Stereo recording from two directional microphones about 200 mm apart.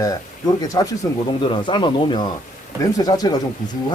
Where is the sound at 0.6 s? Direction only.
15° left (ahead or behind).